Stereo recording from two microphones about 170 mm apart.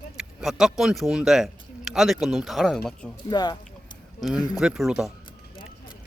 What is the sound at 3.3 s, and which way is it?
Speech, 25° left (ahead or behind).